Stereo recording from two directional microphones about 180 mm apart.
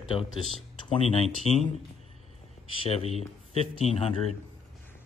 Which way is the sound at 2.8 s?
35° left (ahead or behind).